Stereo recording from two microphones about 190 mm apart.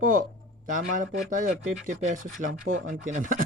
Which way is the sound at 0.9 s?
45° right (ahead or behind).